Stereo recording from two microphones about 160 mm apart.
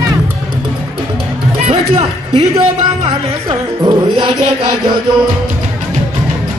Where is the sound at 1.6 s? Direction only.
40° right (ahead or behind).